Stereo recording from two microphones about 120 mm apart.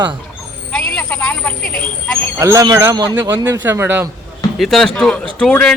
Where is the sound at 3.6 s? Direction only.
20° right (ahead or behind).